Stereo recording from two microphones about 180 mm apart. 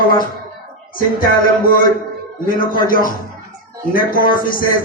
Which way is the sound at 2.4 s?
50° left (ahead or behind).